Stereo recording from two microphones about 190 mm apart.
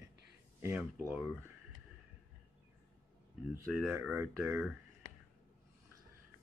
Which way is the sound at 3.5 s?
10° right (ahead or behind).